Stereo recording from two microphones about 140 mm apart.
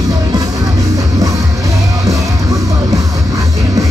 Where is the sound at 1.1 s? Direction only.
25° right (ahead or behind).